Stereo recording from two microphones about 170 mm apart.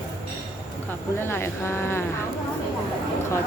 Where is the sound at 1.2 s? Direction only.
15° left (ahead or behind).